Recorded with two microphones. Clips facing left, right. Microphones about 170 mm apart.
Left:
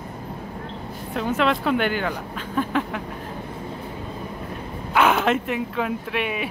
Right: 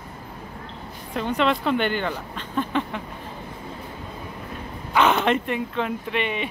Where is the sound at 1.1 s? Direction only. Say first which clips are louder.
Even; 5° left (ahead or behind).